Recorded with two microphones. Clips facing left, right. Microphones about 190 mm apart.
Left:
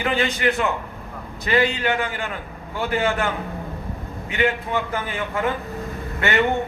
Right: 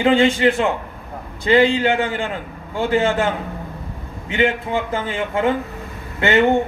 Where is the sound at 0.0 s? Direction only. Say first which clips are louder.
Right 7 dB; 25° right (ahead or behind).